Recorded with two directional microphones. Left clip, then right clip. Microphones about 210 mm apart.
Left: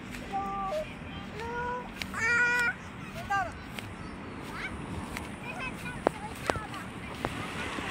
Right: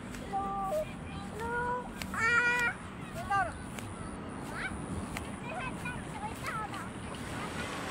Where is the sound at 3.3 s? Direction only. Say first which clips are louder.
Even; 50° left (ahead or behind).